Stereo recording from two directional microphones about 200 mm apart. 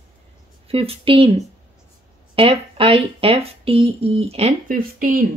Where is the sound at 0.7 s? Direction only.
30° right (ahead or behind).